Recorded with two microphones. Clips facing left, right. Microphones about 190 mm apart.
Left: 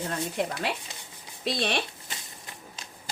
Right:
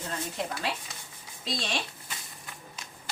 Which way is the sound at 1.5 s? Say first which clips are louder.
Left 5 dB; 60° left (ahead or behind).